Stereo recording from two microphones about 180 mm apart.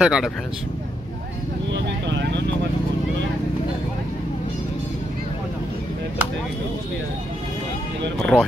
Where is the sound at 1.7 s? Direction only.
75° right (ahead or behind).